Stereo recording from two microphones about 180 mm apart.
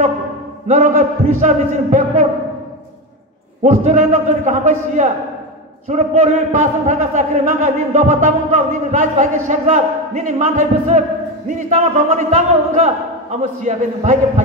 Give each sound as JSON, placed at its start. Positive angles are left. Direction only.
{"t": 0.7, "sound": "a man's voice", "side_deg": -45}
{"t": 3.6, "sound": "a man's voice", "side_deg": -45}